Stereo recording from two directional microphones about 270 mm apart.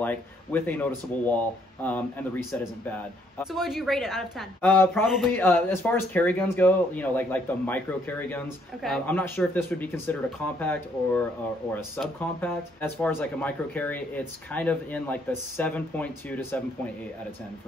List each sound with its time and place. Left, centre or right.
0.0 s a woman's voice: centre
3.3 s a woman's voice: centre